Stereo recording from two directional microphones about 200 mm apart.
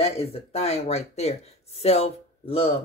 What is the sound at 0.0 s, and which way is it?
Speech, 30° left (ahead or behind).